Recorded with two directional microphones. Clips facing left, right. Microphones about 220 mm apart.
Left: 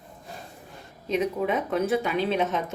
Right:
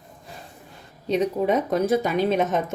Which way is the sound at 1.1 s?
35° right (ahead or behind).